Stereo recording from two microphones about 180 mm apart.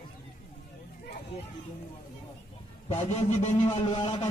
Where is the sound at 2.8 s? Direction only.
40° left (ahead or behind).